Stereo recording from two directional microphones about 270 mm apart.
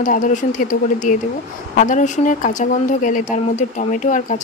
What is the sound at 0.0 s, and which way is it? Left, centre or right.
Speech, left.